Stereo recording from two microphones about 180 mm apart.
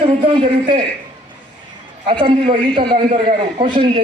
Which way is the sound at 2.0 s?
30° right (ahead or behind).